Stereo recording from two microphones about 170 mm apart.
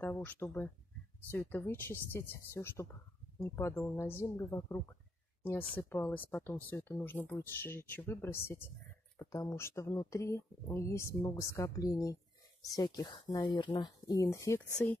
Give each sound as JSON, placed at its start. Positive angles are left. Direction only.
{"t": 0.0, "sound": "speech", "side_deg": 10}